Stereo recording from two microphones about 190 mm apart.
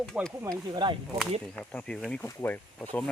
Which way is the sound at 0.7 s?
25° right (ahead or behind).